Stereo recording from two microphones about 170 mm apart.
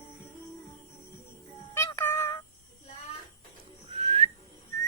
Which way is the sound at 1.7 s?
15° left (ahead or behind).